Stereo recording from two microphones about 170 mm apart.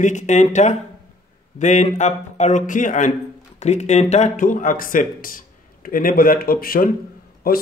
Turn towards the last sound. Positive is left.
turn(degrees=60)  # may be behind; listen again after turning